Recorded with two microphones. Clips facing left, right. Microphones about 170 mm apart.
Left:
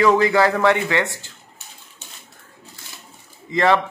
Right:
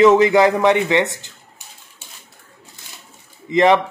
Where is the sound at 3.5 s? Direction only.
20° right (ahead or behind).